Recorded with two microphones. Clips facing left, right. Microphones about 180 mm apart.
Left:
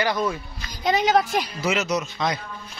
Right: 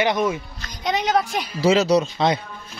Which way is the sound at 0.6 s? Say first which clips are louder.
Left 2 dB; centre (ahead or behind).